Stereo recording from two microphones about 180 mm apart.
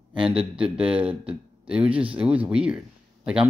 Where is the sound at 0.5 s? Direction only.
5° right (ahead or behind).